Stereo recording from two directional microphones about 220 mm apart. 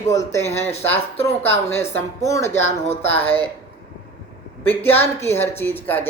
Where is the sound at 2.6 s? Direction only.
30° left (ahead or behind).